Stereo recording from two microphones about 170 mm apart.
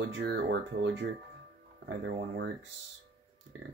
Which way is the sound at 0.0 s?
90° right.